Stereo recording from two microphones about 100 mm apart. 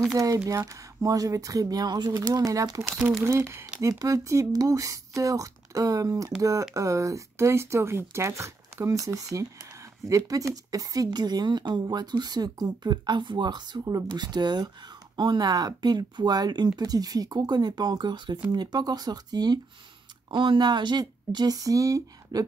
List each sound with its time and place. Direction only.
0.0 s a woman's voice: 35° right (ahead or behind)